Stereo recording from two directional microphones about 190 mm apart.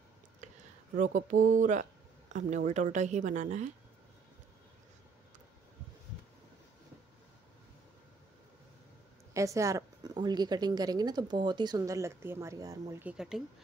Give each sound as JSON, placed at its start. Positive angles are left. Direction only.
{"t": 0.4, "sound": "a sound", "side_deg": -40}
{"t": 0.9, "sound": "speech", "side_deg": -40}
{"t": 9.3, "sound": "a woman's voice", "side_deg": -15}
{"t": 13.0, "sound": "speech", "side_deg": -5}